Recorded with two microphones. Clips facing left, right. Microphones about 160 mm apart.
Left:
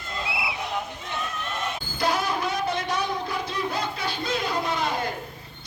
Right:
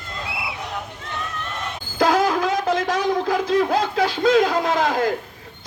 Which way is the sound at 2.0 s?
90° right.